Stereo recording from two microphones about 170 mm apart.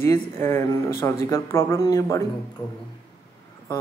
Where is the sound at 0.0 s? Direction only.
15° left (ahead or behind).